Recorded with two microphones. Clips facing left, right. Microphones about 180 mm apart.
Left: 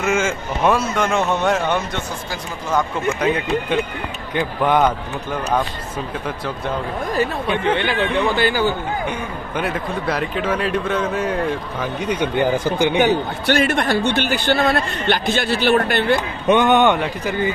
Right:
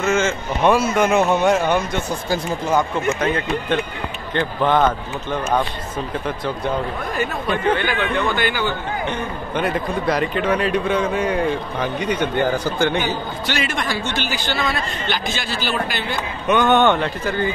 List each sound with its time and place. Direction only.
0.0 s speech: 10° left (ahead or behind)
3.2 s a man's voice: 10° left (ahead or behind)
7.7 s speech: 30° left (ahead or behind)
9.6 s speech: 5° left (ahead or behind)
13.0 s speech: 60° left (ahead or behind)
16.4 s a man's voice: 20° left (ahead or behind)